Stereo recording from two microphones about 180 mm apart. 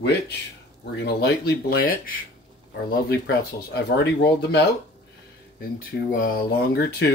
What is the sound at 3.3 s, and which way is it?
Speech, 65° left (ahead or behind).